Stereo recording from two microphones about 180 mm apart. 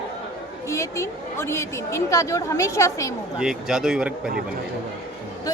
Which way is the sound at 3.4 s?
5° right (ahead or behind).